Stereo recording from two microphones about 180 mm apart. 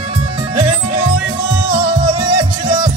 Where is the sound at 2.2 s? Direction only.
30° right (ahead or behind).